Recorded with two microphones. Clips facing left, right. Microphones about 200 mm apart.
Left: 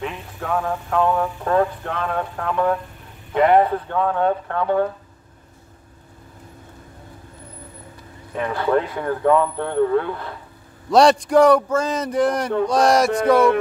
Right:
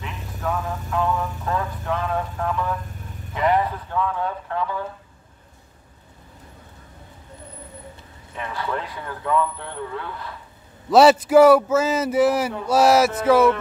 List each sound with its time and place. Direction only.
0.0 s a sound: 45° left (ahead or behind)
1.8 s speech: 65° left (ahead or behind)
8.4 s speech: 50° left (ahead or behind)
10.9 s speech: 5° right (ahead or behind)